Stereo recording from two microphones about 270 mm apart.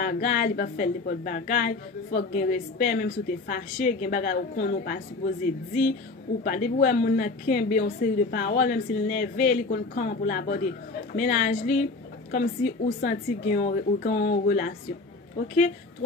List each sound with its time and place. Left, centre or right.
0.0 s a woman's voice: left
6.4 s a woman's voice: left